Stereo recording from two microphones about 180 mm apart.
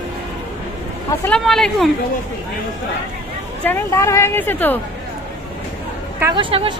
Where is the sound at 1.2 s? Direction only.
5° left (ahead or behind).